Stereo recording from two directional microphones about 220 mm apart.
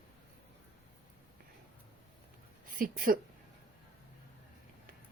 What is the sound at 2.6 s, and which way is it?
Speech, 40° right (ahead or behind).